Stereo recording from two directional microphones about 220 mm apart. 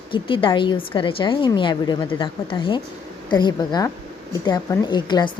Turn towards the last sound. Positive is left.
turn(degrees=20)  # may be behind; listen again after turning